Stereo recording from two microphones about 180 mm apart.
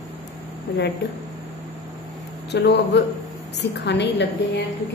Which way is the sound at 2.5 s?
65° left (ahead or behind).